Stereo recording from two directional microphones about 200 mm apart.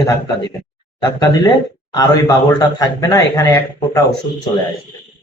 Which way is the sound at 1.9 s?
20° left (ahead or behind).